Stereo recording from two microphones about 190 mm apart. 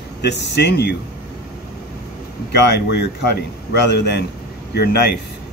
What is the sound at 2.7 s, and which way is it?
A man's voice, 60° left (ahead or behind).